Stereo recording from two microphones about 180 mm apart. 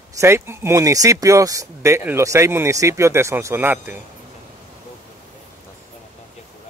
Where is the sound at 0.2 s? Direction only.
15° right (ahead or behind).